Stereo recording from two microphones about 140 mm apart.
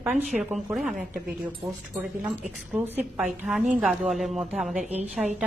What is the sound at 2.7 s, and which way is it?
Speech, 15° right (ahead or behind).